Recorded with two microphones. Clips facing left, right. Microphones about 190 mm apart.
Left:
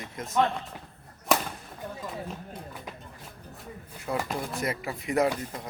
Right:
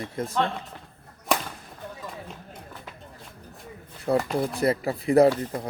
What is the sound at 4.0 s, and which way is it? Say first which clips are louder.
Speech: right 7 dB; 35° right (ahead or behind).